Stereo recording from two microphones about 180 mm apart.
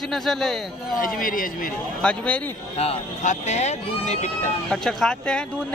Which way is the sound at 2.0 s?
5° left (ahead or behind).